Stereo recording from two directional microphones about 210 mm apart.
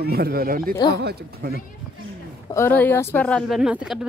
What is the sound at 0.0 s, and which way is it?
Speech, 45° right (ahead or behind).